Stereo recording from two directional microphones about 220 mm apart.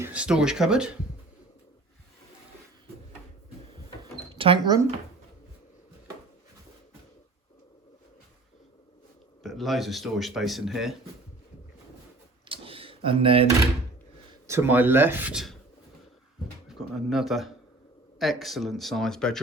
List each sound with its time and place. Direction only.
0.0 s speech: 5° right (ahead or behind)
4.4 s speech: 25° right (ahead or behind)
9.4 s speech: centre (ahead or behind)
12.5 s a sound: 25° right (ahead or behind)
14.4 s speech: 10° right (ahead or behind)
16.6 s speech: centre (ahead or behind)